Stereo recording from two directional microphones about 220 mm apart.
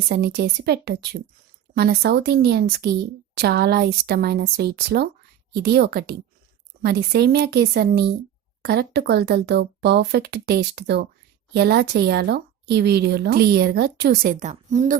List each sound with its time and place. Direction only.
0.1 s speech: 45° right (ahead or behind)